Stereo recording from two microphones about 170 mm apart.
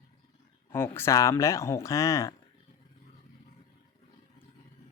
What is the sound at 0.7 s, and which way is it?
Speech, 15° left (ahead or behind).